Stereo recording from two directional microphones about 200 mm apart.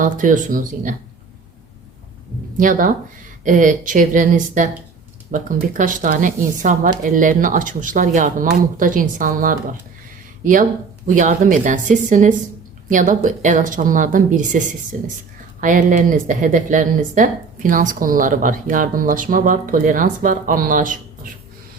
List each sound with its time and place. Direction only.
0.0 s speech: 40° right (ahead or behind)
2.6 s speech: 40° right (ahead or behind)